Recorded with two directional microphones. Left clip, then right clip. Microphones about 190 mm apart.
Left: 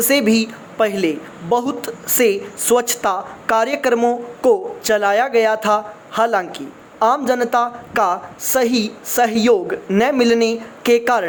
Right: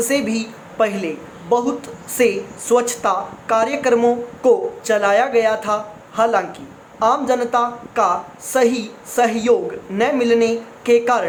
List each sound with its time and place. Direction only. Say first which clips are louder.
0.0 s a woman's voice: left 4 dB; 35° left (ahead or behind)